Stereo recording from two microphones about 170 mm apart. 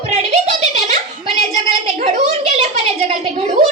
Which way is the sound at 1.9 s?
40° right (ahead or behind).